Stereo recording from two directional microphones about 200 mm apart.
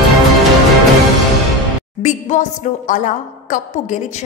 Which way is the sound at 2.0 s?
40° left (ahead or behind).